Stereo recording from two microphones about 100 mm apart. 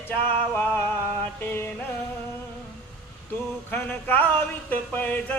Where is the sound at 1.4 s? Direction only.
20° left (ahead or behind).